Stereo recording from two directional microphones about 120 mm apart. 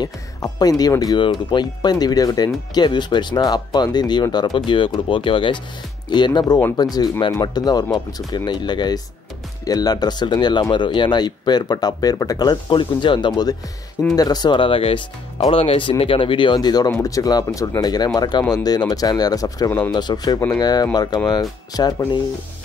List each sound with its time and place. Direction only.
0.0 s speech: 35° left (ahead or behind)